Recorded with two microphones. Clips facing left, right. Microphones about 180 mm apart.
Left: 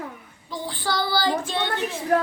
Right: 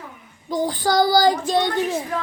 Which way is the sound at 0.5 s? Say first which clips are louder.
Right 8 dB; 40° right (ahead or behind).